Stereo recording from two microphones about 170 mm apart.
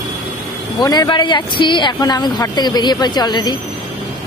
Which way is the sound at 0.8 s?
25° left (ahead or behind).